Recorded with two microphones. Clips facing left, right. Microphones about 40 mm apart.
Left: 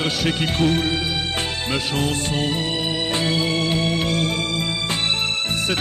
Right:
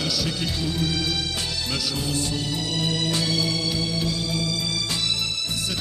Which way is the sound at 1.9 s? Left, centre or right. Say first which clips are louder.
Left 4 dB; left.